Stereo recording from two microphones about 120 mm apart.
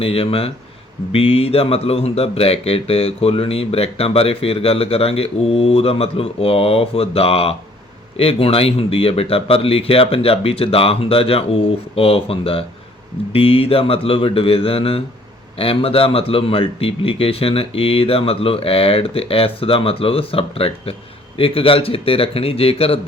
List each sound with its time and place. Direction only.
0.0 s speech: 50° left (ahead or behind)